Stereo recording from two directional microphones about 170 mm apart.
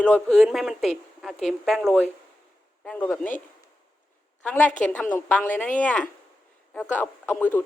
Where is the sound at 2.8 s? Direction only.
5° left (ahead or behind).